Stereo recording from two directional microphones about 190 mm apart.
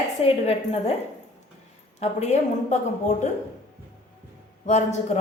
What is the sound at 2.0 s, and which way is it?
Speech, 35° left (ahead or behind).